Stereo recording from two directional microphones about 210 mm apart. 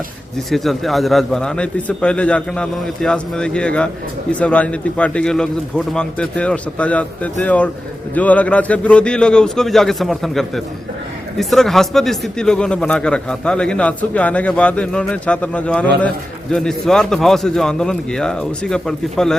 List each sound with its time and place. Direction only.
0.3 s a man's voice: centre (ahead or behind)